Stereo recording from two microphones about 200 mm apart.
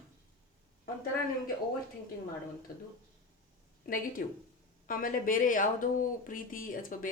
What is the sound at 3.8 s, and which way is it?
Speech, 45° left (ahead or behind).